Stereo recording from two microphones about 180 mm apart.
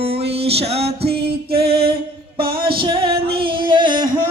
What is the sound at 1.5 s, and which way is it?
Music, 60° right (ahead or behind).